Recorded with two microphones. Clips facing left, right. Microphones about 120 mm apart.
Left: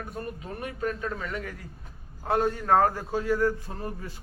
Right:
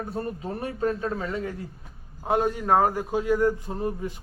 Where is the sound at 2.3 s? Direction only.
15° right (ahead or behind).